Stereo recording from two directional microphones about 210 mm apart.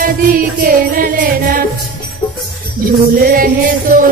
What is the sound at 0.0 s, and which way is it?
Music, 40° right (ahead or behind).